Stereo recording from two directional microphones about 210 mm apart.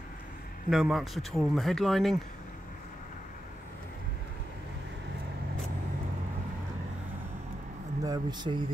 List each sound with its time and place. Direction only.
0.7 s speech: centre (ahead or behind)
8.0 s speech: 20° right (ahead or behind)